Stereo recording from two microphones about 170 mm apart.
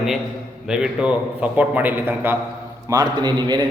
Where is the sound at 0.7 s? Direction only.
5° right (ahead or behind).